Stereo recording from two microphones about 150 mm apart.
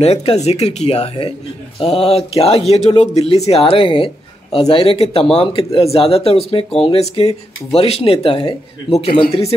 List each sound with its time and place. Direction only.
0.0 s speech: 45° left (ahead or behind)